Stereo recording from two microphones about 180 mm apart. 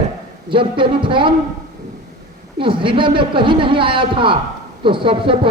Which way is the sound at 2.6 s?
30° right (ahead or behind).